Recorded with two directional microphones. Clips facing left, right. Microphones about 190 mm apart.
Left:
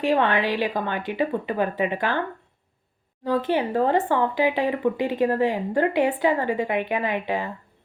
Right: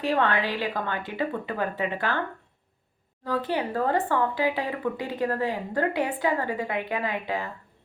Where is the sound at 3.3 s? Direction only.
20° left (ahead or behind).